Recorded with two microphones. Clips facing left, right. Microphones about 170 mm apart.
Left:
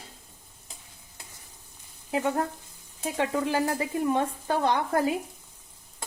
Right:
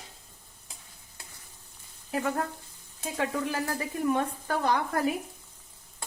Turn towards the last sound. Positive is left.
turn(degrees=25)  # may be behind; listen again after turning